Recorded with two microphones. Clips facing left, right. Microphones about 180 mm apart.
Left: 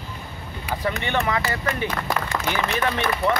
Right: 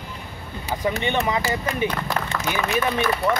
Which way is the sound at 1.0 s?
15° right (ahead or behind).